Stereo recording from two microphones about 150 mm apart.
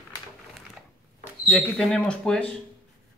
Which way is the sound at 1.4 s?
Centre (ahead or behind).